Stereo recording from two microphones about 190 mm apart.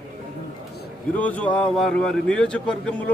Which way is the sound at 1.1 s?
10° left (ahead or behind).